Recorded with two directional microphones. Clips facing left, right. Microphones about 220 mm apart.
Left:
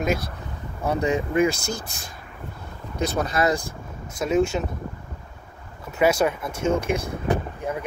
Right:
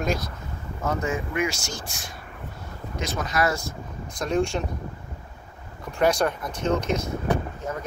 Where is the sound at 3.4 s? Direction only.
25° left (ahead or behind).